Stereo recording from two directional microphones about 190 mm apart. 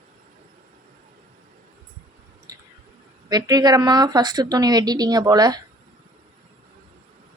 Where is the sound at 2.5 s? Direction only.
20° right (ahead or behind).